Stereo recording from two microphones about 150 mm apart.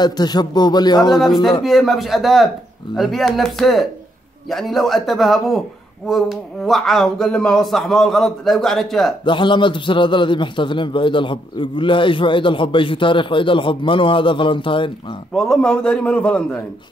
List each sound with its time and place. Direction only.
0.0 s a man's voice: 25° left (ahead or behind)
1.2 s a man's voice: centre (ahead or behind)
9.2 s a man's voice: 35° left (ahead or behind)
15.3 s a man's voice: 5° left (ahead or behind)